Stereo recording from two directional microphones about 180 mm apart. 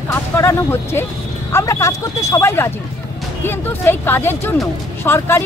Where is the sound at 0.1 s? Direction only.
15° left (ahead or behind).